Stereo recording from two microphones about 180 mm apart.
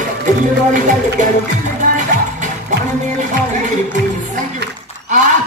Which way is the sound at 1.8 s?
45° right (ahead or behind).